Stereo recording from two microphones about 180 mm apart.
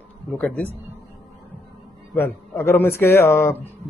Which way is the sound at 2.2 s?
10° left (ahead or behind).